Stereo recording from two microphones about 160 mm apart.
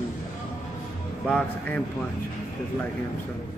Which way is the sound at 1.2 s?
5° left (ahead or behind).